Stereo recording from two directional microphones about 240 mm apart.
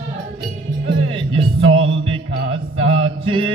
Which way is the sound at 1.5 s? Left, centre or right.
Right.